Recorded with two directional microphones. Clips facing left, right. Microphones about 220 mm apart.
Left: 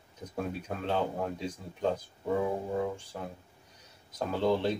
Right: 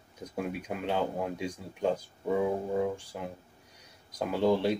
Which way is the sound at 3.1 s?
15° right (ahead or behind).